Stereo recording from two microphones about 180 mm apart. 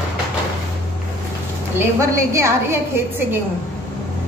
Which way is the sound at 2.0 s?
15° right (ahead or behind).